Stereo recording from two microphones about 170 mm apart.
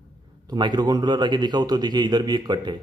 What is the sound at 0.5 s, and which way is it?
Speech, 25° right (ahead or behind).